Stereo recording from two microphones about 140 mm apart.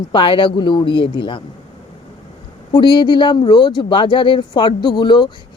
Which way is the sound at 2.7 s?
35° left (ahead or behind).